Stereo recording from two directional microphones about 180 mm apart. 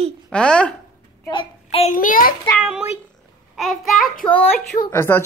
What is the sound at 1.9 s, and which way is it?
Speech, 50° left (ahead or behind).